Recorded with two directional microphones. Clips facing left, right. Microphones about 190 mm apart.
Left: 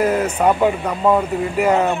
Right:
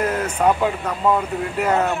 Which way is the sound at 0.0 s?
10° left (ahead or behind).